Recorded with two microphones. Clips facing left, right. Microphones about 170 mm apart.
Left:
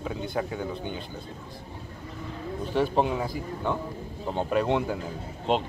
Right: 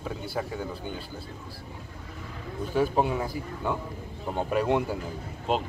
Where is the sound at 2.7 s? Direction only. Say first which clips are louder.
Even; 10° right (ahead or behind).